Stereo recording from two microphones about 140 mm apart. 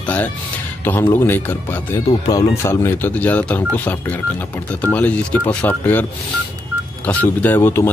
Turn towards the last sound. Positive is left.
turn(degrees=15)  # may be behind; listen again after turning